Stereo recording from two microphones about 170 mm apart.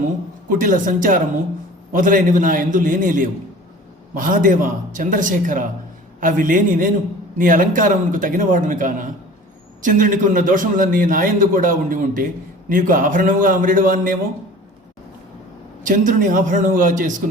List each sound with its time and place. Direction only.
0.4 s a man's voice: 50° right (ahead or behind)
15.9 s a man's voice: 50° right (ahead or behind)